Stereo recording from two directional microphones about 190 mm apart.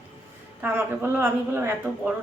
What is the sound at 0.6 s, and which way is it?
Speech, 10° right (ahead or behind).